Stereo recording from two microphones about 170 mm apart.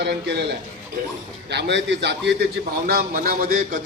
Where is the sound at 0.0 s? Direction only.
85° right.